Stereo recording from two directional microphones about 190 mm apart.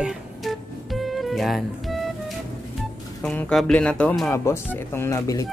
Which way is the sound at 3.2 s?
5° left (ahead or behind).